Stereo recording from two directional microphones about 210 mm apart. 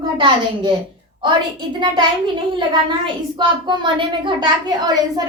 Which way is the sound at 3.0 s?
20° right (ahead or behind).